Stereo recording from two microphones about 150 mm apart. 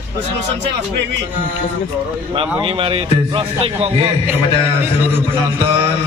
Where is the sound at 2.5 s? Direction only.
35° right (ahead or behind).